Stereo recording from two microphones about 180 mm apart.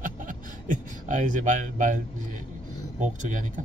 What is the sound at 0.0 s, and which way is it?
Beatboxing, 45° right (ahead or behind).